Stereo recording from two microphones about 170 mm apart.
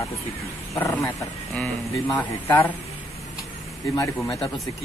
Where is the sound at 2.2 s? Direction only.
10° left (ahead or behind).